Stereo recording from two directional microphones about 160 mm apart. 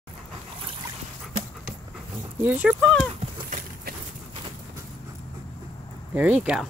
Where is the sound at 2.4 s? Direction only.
10° right (ahead or behind).